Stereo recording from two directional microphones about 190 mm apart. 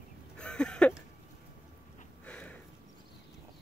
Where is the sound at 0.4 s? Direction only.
5° left (ahead or behind).